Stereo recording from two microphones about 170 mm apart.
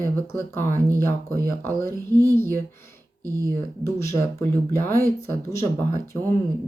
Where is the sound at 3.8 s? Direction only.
15° left (ahead or behind).